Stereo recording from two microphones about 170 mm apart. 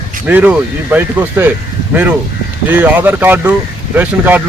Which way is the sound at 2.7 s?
10° right (ahead or behind).